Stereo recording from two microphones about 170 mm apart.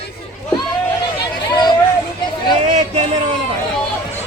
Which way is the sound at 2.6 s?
40° right (ahead or behind).